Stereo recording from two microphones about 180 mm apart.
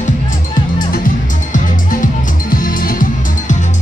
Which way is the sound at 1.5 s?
50° left (ahead or behind).